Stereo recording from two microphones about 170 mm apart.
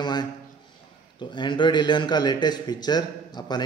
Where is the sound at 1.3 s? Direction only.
30° left (ahead or behind).